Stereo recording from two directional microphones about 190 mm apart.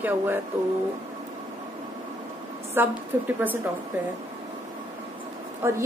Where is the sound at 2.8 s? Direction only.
10° right (ahead or behind).